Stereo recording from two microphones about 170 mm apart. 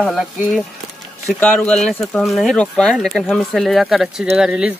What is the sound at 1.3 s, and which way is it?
Speech, 5° left (ahead or behind).